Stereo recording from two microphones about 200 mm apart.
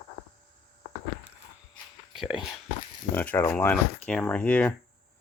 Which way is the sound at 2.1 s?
5° right (ahead or behind).